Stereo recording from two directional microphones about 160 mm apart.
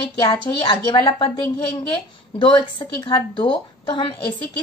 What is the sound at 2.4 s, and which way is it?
A woman's voice, 30° left (ahead or behind).